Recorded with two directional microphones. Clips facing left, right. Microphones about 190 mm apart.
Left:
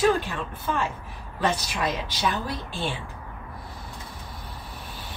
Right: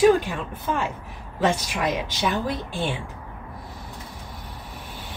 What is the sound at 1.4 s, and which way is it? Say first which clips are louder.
A woman's voice: right 3 dB; 20° right (ahead or behind).